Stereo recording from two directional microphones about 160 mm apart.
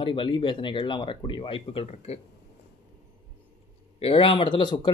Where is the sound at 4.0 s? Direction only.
35° left (ahead or behind).